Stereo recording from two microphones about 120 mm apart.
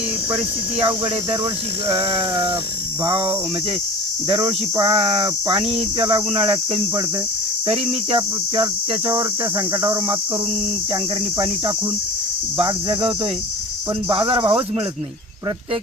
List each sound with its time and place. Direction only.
0.3 s cricket: 45° right (ahead or behind)
3.0 s cricket: 45° right (ahead or behind)
9.7 s cricket: 25° right (ahead or behind)
12.5 s cricket: 50° right (ahead or behind)